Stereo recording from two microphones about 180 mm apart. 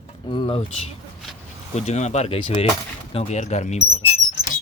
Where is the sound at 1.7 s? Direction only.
40° left (ahead or behind).